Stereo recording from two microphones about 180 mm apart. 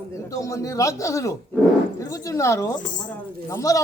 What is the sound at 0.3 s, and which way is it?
A man's voice, 20° left (ahead or behind).